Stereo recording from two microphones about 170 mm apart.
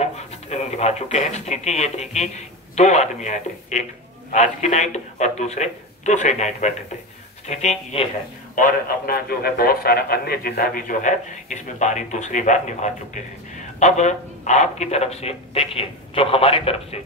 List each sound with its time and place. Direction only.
0.0 s a man's voice: 40° left (ahead or behind)
8.5 s a man's voice: 55° left (ahead or behind); by 17.0 s 35° left (ahead or behind)